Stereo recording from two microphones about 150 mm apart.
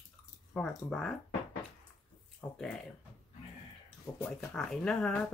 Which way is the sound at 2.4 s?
5° left (ahead or behind).